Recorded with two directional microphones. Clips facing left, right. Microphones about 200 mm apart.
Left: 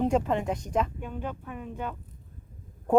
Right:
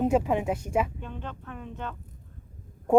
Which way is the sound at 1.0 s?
10° left (ahead or behind).